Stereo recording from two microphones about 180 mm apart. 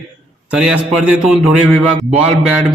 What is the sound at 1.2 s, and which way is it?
Speech, 5° right (ahead or behind).